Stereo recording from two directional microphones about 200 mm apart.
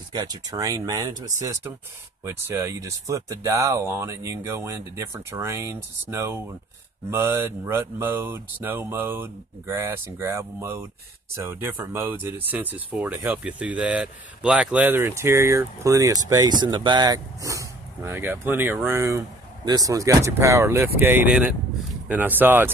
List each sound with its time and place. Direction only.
0.1 s speech: 20° right (ahead or behind)